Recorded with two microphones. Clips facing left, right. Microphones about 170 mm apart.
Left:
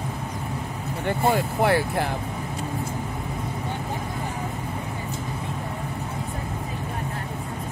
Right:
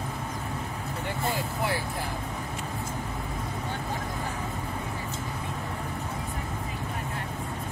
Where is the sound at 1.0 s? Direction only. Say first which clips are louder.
Left 9 dB; 65° left (ahead or behind).